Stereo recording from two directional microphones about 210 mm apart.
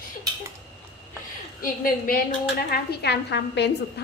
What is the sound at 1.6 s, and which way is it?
A woman's voice, 40° left (ahead or behind).